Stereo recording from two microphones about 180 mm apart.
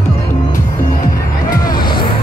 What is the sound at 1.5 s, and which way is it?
Music, 20° left (ahead or behind).